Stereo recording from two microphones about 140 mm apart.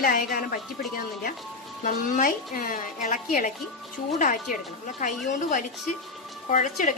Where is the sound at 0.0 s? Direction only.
85° left.